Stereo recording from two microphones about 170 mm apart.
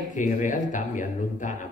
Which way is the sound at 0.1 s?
50° left (ahead or behind).